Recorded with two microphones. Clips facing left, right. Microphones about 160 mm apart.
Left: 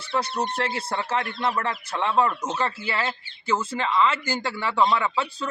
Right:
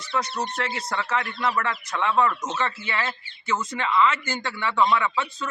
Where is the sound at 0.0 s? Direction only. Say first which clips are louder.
Left 1 dB; 30° left (ahead or behind).